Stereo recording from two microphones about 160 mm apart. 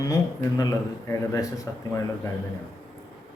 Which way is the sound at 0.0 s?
25° left (ahead or behind).